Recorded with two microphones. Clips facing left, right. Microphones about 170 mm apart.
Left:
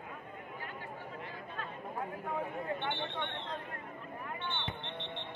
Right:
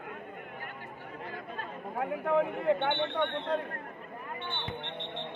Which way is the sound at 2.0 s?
70° right (ahead or behind).